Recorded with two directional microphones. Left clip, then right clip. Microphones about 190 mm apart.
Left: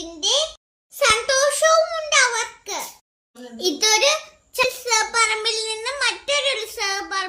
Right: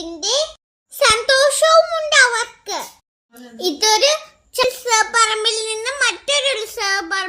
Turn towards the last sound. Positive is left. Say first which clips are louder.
# right 4 dB
turn(degrees=-35)  # may be behind; listen again after turning